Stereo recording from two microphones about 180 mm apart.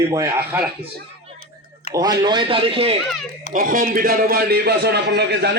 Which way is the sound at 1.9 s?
20° right (ahead or behind).